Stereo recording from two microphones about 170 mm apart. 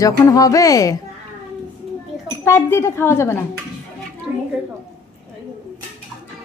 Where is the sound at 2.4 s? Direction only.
15° left (ahead or behind).